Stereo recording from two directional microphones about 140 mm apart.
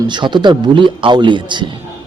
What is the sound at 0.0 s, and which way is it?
A man's voice, 35° right (ahead or behind).